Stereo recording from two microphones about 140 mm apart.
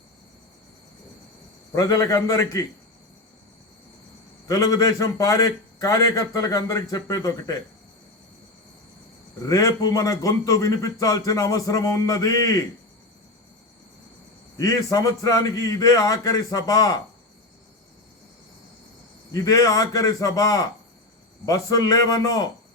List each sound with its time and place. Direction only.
1.7 s a man's voice: 25° left (ahead or behind)
4.4 s a man's voice: 25° left (ahead or behind)
9.5 s a man's voice: 25° left (ahead or behind)
14.6 s a man's voice: 25° left (ahead or behind)
19.3 s a man's voice: 25° left (ahead or behind)